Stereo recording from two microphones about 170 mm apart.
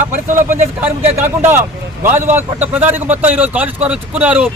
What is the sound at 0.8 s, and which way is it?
A man's voice, 15° right (ahead or behind).